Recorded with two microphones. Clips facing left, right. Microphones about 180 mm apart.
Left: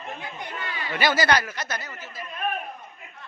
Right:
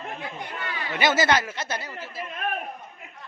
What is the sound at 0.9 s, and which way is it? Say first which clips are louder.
Speech: even; 20° right (ahead or behind).